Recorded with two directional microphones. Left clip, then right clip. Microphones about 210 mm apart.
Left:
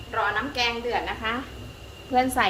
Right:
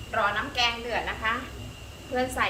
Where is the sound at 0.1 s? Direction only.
35° left (ahead or behind).